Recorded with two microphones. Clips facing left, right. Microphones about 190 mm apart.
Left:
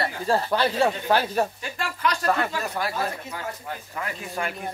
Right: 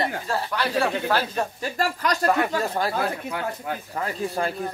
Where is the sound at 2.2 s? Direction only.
15° right (ahead or behind).